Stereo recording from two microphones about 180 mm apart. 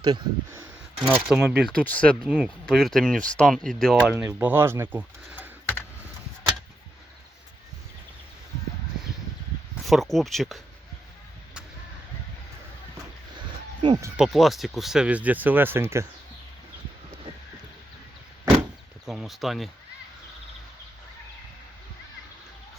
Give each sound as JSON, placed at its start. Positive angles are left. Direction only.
{"t": 0.0, "sound": "speech", "side_deg": -25}
{"t": 1.0, "sound": "speech", "side_deg": 0}
{"t": 4.1, "sound": "speech", "side_deg": -15}
{"t": 9.8, "sound": "speech", "side_deg": 0}
{"t": 13.8, "sound": "speech", "side_deg": -25}
{"t": 14.2, "sound": "speech", "side_deg": 0}
{"t": 19.0, "sound": "speech", "side_deg": 0}